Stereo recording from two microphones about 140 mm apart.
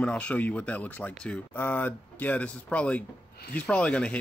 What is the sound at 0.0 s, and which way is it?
Speech, 10° left (ahead or behind).